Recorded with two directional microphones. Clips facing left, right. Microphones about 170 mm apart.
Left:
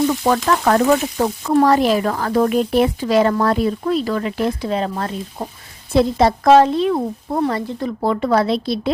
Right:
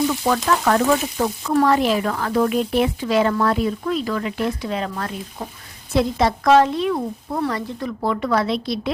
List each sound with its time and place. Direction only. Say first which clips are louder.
0.4 s speech: left 2 dB; 40° left (ahead or behind)